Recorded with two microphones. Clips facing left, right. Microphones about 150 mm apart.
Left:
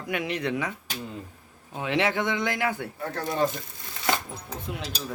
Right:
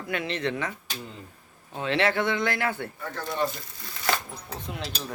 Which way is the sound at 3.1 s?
35° left (ahead or behind).